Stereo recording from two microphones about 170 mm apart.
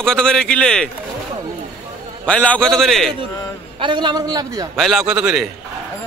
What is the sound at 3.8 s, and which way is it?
Speech, 25° right (ahead or behind).